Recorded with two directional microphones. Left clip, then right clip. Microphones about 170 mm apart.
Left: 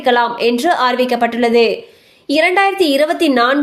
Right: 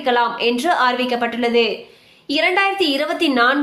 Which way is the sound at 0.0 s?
25° left (ahead or behind).